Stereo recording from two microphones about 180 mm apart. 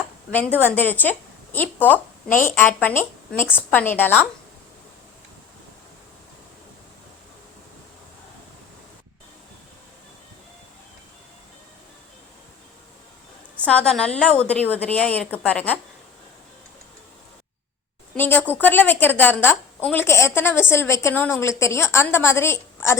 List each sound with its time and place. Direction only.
0.6 s a woman's voice: 10° left (ahead or behind)
13.7 s a woman's voice: 5° left (ahead or behind)
18.1 s a woman's voice: 10° left (ahead or behind)